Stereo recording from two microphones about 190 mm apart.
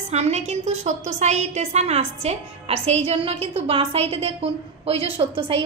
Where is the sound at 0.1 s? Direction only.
35° right (ahead or behind).